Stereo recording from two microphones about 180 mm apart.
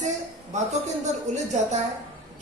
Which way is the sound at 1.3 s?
40° right (ahead or behind).